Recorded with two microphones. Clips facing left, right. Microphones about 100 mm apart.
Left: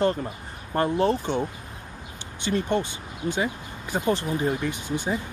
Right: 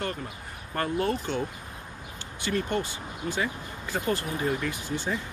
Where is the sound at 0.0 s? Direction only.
30° left (ahead or behind).